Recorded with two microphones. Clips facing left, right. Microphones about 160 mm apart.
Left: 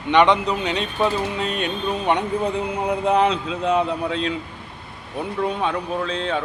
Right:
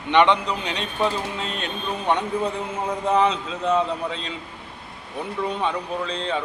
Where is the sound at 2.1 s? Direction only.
10° left (ahead or behind).